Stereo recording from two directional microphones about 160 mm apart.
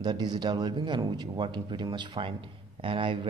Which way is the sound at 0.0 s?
25° right (ahead or behind).